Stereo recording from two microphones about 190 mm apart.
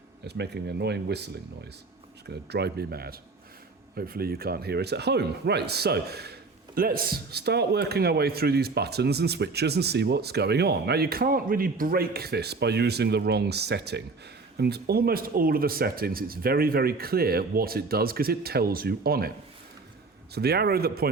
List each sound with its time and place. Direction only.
0.3 s a man's voice: 60° right (ahead or behind)
20.3 s a man's voice: 55° right (ahead or behind)